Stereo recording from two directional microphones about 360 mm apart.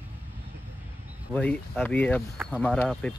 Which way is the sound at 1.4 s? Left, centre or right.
Centre.